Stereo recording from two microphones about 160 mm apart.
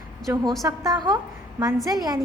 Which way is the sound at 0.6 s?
25° right (ahead or behind).